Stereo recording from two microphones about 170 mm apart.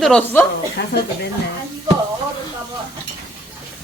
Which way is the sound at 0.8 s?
90° left.